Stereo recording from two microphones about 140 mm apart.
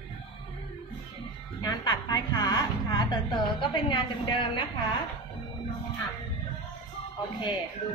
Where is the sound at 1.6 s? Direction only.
30° left (ahead or behind).